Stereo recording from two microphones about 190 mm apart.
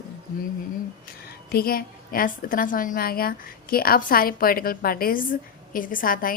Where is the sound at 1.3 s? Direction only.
55° left (ahead or behind).